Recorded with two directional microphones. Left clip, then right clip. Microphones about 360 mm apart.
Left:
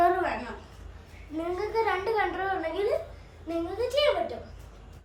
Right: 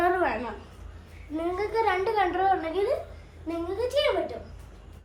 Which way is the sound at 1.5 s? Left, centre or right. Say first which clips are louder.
Right 2 dB; right.